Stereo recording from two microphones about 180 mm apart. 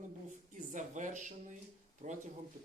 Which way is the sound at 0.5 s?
45° right (ahead or behind).